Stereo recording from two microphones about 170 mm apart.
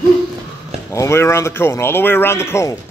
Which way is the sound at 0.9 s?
15° left (ahead or behind).